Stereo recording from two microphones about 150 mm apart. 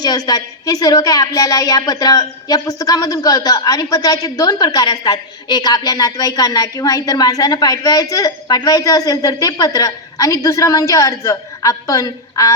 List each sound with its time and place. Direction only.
0.0 s a woman's voice: 25° left (ahead or behind)